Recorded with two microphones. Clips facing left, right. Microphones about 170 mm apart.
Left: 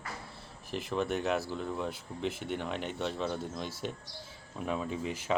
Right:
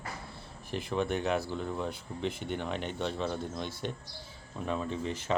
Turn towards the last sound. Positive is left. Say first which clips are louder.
# even
turn(degrees=5)  # may be behind; listen again after turning